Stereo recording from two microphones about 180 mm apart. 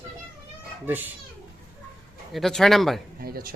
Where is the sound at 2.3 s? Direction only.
Centre (ahead or behind).